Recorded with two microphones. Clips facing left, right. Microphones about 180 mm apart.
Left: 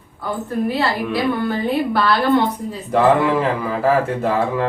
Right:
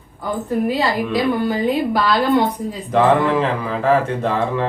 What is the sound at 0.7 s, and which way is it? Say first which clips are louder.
A woman's voice: right 1 dB; 15° right (ahead or behind).